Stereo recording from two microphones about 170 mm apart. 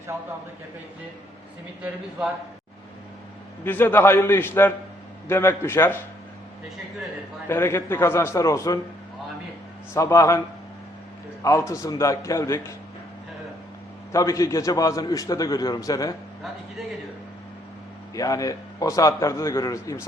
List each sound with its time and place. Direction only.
1.8 s a man's voice: 5° right (ahead or behind)
3.6 s a man's voice: 10° left (ahead or behind)
7.4 s a man's voice: 15° left (ahead or behind)
9.9 s a man's voice: 15° left (ahead or behind)
11.4 s a man's voice: 15° left (ahead or behind)
14.1 s a man's voice: 20° left (ahead or behind)
18.1 s a man's voice: 20° left (ahead or behind)